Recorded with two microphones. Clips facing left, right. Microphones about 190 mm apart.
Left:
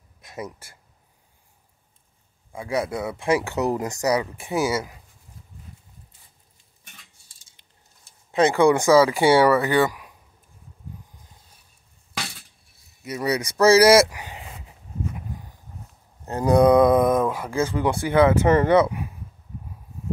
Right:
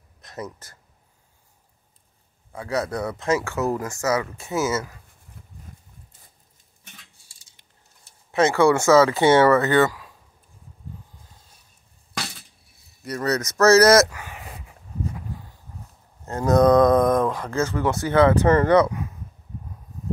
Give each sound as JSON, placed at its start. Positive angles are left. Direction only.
{"t": 0.2, "sound": "speech", "side_deg": 10}
{"t": 2.5, "sound": "speech", "side_deg": 10}
{"t": 5.4, "sound": "horse", "side_deg": -60}
{"t": 7.6, "sound": "a sound", "side_deg": 15}
{"t": 8.3, "sound": "speech", "side_deg": 15}
{"t": 12.1, "sound": "glass", "side_deg": 0}
{"t": 13.0, "sound": "a sound", "side_deg": 10}
{"t": 16.3, "sound": "speech", "side_deg": 15}